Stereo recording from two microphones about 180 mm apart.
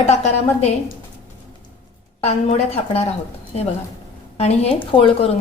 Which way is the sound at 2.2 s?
35° left (ahead or behind).